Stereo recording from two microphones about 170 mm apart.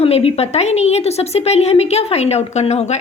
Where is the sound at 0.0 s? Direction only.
35° left (ahead or behind).